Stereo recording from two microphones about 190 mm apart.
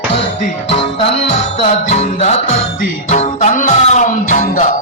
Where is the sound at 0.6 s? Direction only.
30° left (ahead or behind).